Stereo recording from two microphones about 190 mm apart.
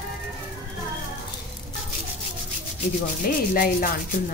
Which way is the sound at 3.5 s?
45° left (ahead or behind).